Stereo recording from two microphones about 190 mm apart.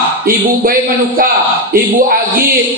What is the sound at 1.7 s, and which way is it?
Speech, 50° right (ahead or behind).